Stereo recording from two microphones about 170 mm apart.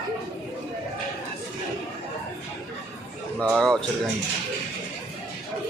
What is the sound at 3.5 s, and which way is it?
Speech, 5° left (ahead or behind).